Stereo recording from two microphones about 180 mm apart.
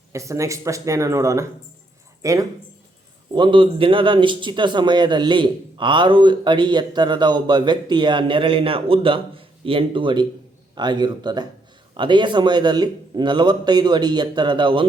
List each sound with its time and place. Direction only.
0.1 s speech: 15° right (ahead or behind)